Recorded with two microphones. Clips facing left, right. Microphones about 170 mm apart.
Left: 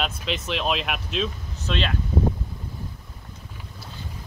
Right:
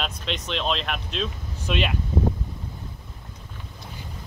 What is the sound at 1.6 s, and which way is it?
Speech, 15° right (ahead or behind).